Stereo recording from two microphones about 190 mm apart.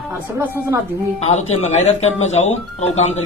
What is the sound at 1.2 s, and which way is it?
A man's voice, 35° left (ahead or behind).